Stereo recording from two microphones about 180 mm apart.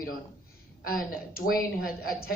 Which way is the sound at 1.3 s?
55° left (ahead or behind).